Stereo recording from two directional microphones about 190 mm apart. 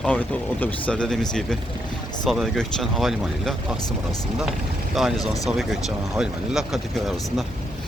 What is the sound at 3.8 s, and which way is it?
Speech, 20° left (ahead or behind).